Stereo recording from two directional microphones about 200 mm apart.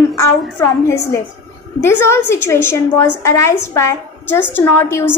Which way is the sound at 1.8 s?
10° left (ahead or behind).